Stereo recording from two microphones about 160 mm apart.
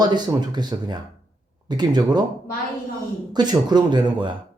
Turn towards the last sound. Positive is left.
turn(degrees=-30)  # may be behind; listen again after turning